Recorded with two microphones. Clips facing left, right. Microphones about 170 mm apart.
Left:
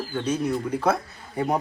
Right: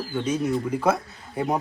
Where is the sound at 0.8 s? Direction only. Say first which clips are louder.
Right 1 dB; 5° right (ahead or behind).